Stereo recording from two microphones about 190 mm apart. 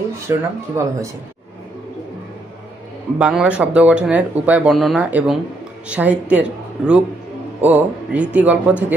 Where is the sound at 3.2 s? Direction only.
5° right (ahead or behind).